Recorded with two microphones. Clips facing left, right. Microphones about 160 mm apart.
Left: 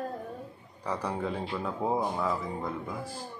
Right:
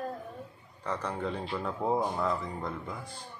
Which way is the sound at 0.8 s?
10° left (ahead or behind).